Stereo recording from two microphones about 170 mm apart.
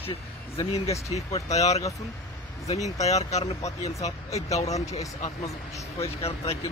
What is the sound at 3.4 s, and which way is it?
Speech, 20° left (ahead or behind).